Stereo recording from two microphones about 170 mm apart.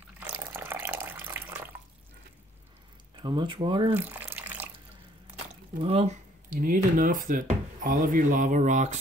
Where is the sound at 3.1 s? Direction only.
30° right (ahead or behind).